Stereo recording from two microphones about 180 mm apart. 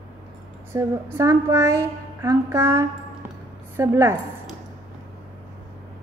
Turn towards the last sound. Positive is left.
turn(degrees=-15)  # may be behind; listen again after turning